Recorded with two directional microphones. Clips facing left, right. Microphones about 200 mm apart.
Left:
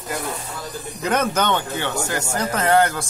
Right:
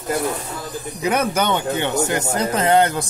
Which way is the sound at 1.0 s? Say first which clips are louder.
Right 1 dB; 10° right (ahead or behind).